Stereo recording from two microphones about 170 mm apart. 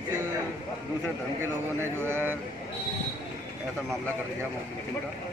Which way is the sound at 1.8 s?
15° right (ahead or behind).